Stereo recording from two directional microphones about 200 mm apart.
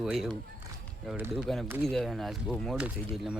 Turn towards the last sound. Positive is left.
turn(degrees=-5)  # may be behind; listen again after turning